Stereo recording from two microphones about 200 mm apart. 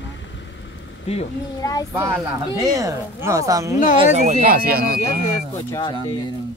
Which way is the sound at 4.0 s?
35° right (ahead or behind).